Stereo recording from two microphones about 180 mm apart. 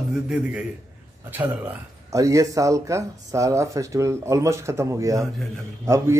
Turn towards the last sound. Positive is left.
turn(degrees=-15)  # may be behind; listen again after turning